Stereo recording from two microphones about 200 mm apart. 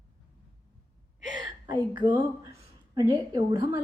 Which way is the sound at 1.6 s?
25° right (ahead or behind).